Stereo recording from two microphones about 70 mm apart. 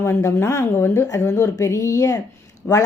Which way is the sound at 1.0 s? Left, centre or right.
Left.